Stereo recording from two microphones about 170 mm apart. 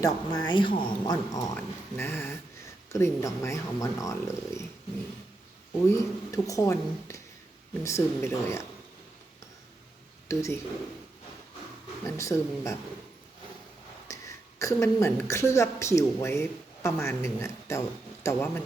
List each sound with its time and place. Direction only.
0.0 s speech: 25° left (ahead or behind)
5.9 s speech: 20° left (ahead or behind)
10.2 s speech: 15° left (ahead or behind)
12.0 s speech: 15° left (ahead or behind)
14.1 s a woman's voice: 20° left (ahead or behind)